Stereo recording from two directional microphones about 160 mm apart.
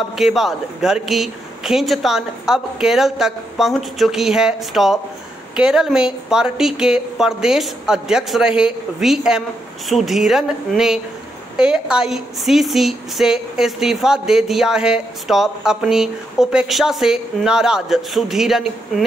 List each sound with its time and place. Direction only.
0.2 s a woman's voice: centre (ahead or behind)